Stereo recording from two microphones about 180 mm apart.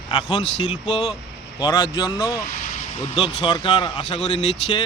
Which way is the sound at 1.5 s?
20° left (ahead or behind).